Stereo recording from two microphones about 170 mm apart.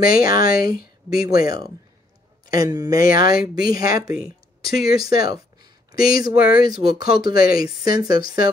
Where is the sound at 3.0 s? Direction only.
60° left (ahead or behind).